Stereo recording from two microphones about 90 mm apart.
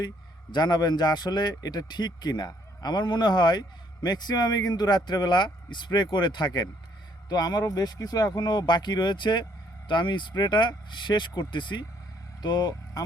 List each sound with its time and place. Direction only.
0.5 s a man's voice: 50° left (ahead or behind)